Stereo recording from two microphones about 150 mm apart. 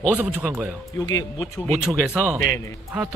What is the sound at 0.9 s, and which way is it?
Speech, 25° left (ahead or behind).